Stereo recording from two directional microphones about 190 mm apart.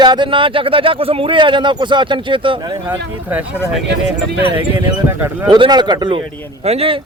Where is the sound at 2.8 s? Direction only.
10° right (ahead or behind).